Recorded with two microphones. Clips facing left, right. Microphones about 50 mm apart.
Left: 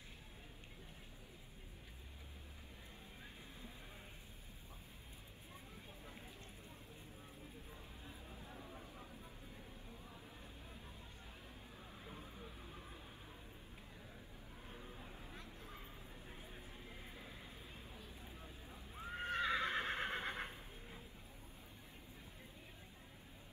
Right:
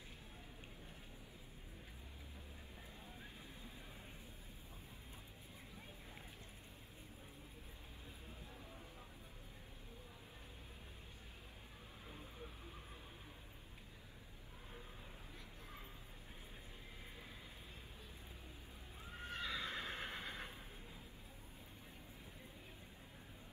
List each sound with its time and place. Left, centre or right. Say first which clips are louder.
18.9 s horse: left 7 dB; left